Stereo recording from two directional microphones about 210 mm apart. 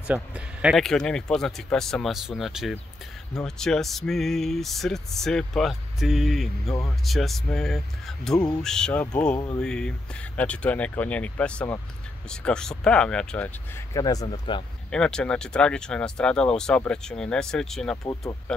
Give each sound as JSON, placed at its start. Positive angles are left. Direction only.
{"t": 0.0, "sound": "speech", "side_deg": -5}
{"t": 13.9, "sound": "speech", "side_deg": 15}
{"t": 14.9, "sound": "speech", "side_deg": 5}